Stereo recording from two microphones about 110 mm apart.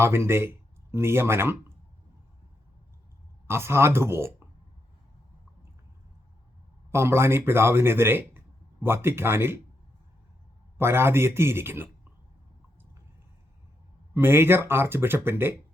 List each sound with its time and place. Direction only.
0.0 s speech: 25° right (ahead or behind)
3.4 s speech: 25° right (ahead or behind)
6.9 s speech: 25° right (ahead or behind)
10.8 s speech: 20° right (ahead or behind)
14.1 s speech: 20° right (ahead or behind)